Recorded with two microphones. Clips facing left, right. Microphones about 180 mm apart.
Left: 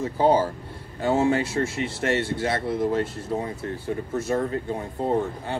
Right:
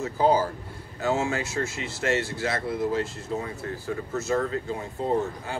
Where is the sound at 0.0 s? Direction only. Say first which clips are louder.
Left 2 dB; 30° left (ahead or behind).